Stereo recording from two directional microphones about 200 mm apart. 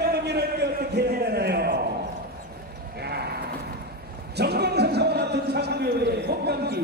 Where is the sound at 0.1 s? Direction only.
55° right (ahead or behind).